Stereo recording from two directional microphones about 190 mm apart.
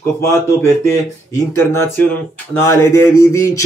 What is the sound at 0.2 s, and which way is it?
Speech, 15° left (ahead or behind).